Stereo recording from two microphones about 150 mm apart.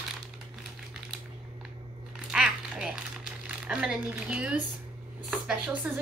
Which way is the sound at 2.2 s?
5° right (ahead or behind).